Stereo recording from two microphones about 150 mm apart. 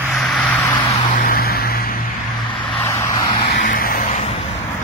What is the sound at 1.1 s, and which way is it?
Vehicle, 70° left (ahead or behind).